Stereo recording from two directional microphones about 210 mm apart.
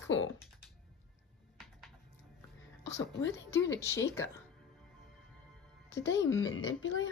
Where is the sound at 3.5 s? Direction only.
60° left (ahead or behind).